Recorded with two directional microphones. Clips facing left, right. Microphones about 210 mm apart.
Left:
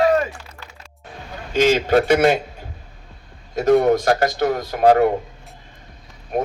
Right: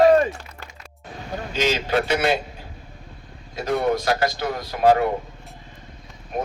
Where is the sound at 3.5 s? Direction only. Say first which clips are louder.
Left 7 dB; 45° left (ahead or behind).